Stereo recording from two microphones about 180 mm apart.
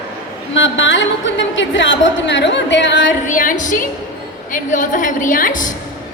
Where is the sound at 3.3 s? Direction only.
45° left (ahead or behind).